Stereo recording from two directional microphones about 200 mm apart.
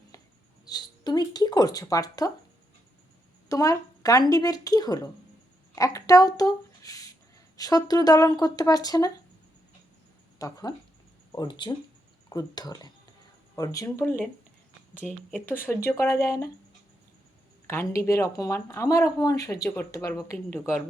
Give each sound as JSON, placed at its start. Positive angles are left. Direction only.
{"t": 0.7, "sound": "speech", "side_deg": 20}
{"t": 3.5, "sound": "a woman's voice", "side_deg": 15}
{"t": 10.3, "sound": "speech", "side_deg": 15}
{"t": 15.0, "sound": "speech", "side_deg": 0}
{"t": 15.9, "sound": "speech", "side_deg": 10}
{"t": 17.7, "sound": "speech", "side_deg": 10}